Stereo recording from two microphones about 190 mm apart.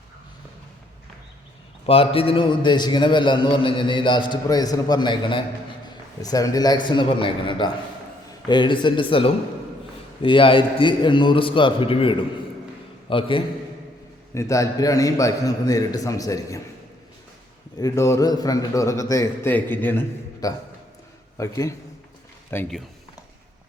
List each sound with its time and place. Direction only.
1.9 s a man's voice: 30° left (ahead or behind)
14.3 s a man's voice: 15° left (ahead or behind)
17.7 s a man's voice: 15° left (ahead or behind)